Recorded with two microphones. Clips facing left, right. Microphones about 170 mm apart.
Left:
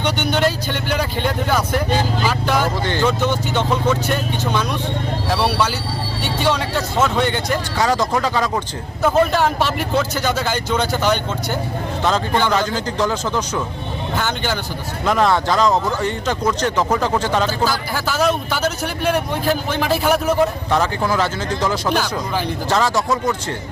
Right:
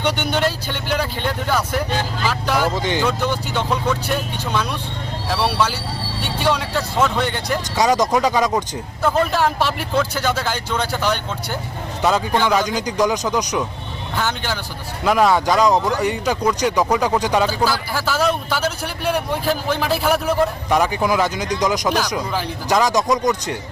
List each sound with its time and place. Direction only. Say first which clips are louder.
0.0 s a man's voice: left 1 dB; 5° right (ahead or behind)
2.8 s speech: left 1 dB; 15° right (ahead or behind)
3.1 s a man's voice: left 2 dB; centre (ahead or behind)
7.8 s speech: right 3 dB; 15° right (ahead or behind)
9.0 s a man's voice: left 2 dB; centre (ahead or behind); by 13.7 s 15° right (ahead or behind)
14.2 s a man's voice: even; centre (ahead or behind)
20.7 s speech: right 1 dB; 15° right (ahead or behind)